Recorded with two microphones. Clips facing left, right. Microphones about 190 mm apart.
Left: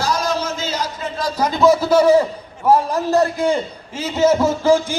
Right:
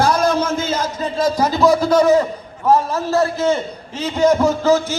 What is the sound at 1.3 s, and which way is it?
A man's voice, 5° right (ahead or behind).